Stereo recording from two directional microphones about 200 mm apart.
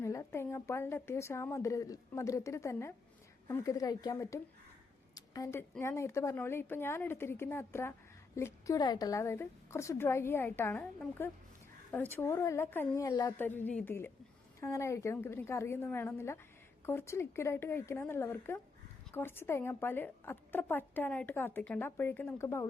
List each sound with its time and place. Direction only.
0.0 s a woman's voice: 15° left (ahead or behind)